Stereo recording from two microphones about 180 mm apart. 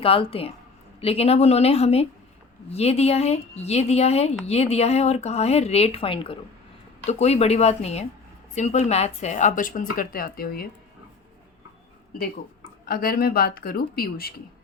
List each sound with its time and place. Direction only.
0.0 s speech: 30° left (ahead or behind); by 10.7 s 55° left (ahead or behind)
12.8 s speech: 55° left (ahead or behind)